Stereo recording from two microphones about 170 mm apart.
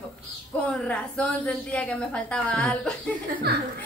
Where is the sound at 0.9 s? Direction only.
5° left (ahead or behind).